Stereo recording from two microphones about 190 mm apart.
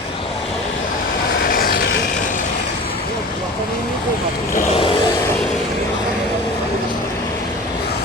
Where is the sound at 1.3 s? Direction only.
50° left (ahead or behind).